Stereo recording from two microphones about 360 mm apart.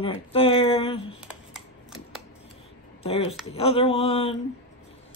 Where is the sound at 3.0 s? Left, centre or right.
Centre.